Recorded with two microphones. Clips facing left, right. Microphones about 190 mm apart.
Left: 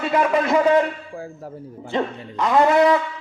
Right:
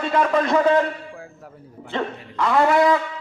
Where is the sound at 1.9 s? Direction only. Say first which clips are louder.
Left 2 dB; 20° left (ahead or behind).